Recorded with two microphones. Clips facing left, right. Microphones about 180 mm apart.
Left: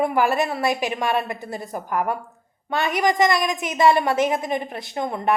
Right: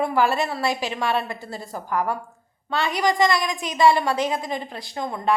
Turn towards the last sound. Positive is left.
turn(degrees=20)  # may be behind; listen again after turning